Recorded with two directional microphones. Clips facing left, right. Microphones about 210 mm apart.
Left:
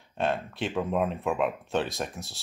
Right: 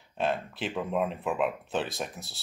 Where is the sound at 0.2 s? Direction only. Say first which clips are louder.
Left 1 dB; centre (ahead or behind).